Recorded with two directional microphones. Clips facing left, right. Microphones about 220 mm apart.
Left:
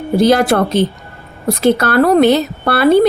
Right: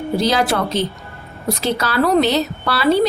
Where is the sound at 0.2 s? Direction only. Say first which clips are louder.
Left 8 dB; 55° left (ahead or behind).